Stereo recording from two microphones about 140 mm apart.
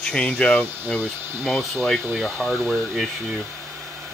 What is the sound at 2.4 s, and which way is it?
Speech, 15° right (ahead or behind).